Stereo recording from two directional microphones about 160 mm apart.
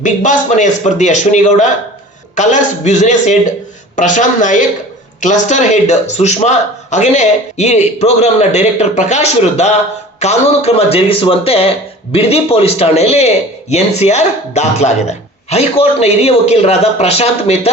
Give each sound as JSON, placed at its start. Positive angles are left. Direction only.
{"t": 0.0, "sound": "a man's voice", "side_deg": 50}